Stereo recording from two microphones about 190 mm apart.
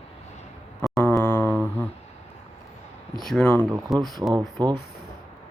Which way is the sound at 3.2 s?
Centre (ahead or behind).